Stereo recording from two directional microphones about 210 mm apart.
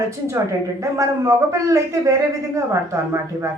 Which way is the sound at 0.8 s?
15° right (ahead or behind).